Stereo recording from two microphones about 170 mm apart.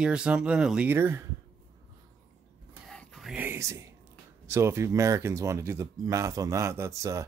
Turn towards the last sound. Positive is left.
turn(degrees=-20)  # may be behind; listen again after turning